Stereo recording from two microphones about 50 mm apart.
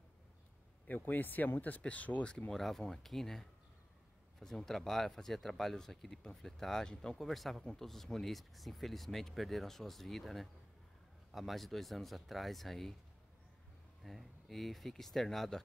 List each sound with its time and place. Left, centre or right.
0.8 s a man's voice: left
2.5 s speech: centre
7.2 s speech: centre
14.0 s speech: centre